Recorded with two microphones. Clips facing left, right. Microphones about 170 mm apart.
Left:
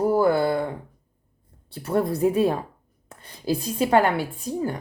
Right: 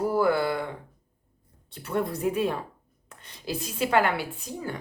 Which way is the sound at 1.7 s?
35° left (ahead or behind).